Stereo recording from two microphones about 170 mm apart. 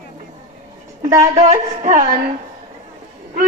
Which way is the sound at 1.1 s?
45° right (ahead or behind).